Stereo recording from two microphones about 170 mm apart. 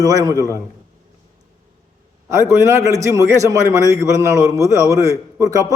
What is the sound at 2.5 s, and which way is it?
A man's voice, 15° right (ahead or behind).